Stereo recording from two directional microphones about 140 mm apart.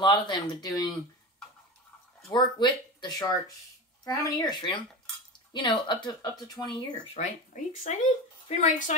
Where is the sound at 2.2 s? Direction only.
35° left (ahead or behind).